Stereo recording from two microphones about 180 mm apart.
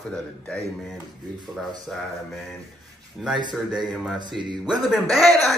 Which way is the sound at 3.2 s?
Centre (ahead or behind).